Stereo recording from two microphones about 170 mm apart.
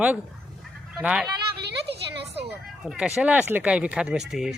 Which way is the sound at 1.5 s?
80° right.